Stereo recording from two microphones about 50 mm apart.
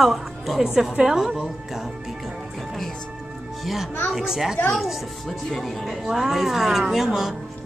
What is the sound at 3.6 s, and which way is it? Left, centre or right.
A woman's voice, centre.